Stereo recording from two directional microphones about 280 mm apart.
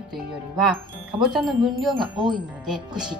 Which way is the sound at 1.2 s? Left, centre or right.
Centre.